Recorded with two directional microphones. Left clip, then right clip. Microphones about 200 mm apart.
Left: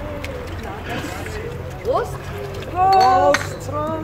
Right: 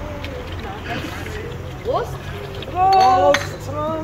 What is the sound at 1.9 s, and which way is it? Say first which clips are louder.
A woman's voice: left 1 dB; centre (ahead or behind).